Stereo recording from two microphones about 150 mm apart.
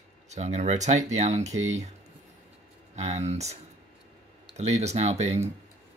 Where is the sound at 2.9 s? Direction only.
45° right (ahead or behind).